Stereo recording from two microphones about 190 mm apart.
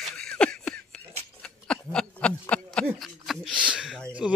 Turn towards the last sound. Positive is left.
turn(degrees=0)  # may be behind; listen again after turning